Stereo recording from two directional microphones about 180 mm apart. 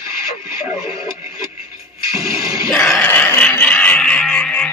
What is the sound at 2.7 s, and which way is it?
Music, 5° left (ahead or behind).